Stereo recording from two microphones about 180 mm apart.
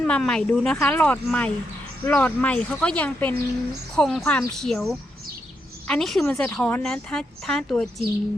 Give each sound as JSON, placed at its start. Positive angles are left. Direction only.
{"t": 0.0, "sound": "a woman's voice", "side_deg": 5}